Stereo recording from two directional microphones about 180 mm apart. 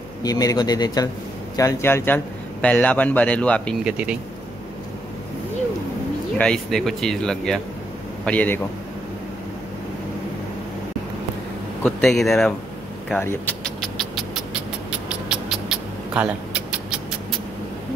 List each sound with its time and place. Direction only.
0.2 s a man's voice: 20° left (ahead or behind)
3.8 s speech: 5° right (ahead or behind)
6.3 s a man's voice: 5° left (ahead or behind)
11.8 s speech: centre (ahead or behind)
13.2 s music: 10° left (ahead or behind); by 17.4 s 5° right (ahead or behind)